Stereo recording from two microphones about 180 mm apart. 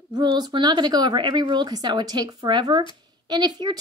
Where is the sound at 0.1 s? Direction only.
25° right (ahead or behind).